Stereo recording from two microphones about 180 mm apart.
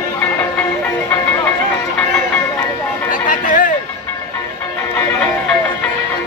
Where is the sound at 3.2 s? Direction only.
45° left (ahead or behind).